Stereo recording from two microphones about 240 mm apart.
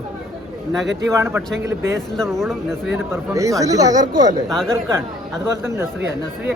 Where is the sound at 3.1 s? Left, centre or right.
Centre.